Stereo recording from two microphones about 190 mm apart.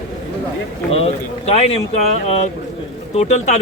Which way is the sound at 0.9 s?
35° left (ahead or behind).